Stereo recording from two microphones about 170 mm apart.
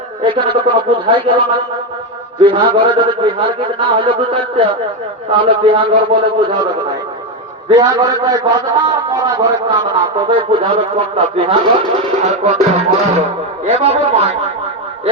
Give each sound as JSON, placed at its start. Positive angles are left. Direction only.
{"t": 0.2, "sound": "a man's voice", "side_deg": -30}
{"t": 7.7, "sound": "a man's voice", "side_deg": -25}
{"t": 12.2, "sound": "music", "side_deg": -40}